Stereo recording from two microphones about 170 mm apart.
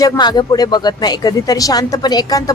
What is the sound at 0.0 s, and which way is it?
Speech, 25° left (ahead or behind).